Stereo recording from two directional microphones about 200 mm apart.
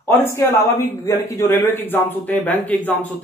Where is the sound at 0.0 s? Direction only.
15° left (ahead or behind).